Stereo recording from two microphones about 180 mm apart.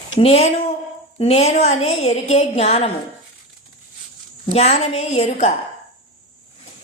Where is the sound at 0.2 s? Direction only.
35° left (ahead or behind).